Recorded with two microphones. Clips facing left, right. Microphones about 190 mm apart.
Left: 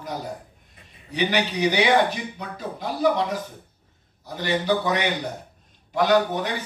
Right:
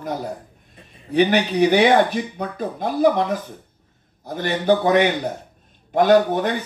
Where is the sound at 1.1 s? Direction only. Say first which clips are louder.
Right 7 dB; 55° right (ahead or behind).